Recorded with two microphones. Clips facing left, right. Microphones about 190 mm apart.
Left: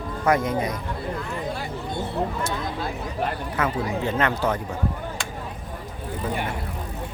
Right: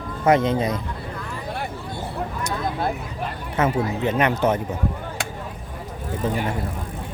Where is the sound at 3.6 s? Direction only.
20° right (ahead or behind).